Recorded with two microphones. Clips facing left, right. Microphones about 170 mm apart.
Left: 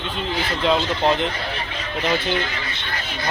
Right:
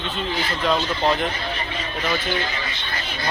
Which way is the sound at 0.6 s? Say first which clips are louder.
Left 2 dB; 25° left (ahead or behind).